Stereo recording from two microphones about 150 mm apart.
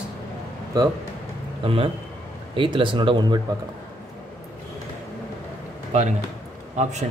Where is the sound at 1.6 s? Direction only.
40° right (ahead or behind).